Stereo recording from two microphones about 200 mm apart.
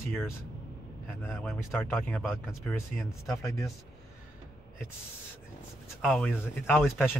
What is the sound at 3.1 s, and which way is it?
Speech, 15° left (ahead or behind).